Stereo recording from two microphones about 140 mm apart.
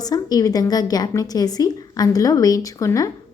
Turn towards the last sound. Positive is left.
turn(degrees=25)  # may be behind; listen again after turning